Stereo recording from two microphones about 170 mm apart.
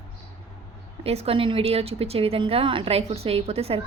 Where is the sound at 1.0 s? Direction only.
35° right (ahead or behind).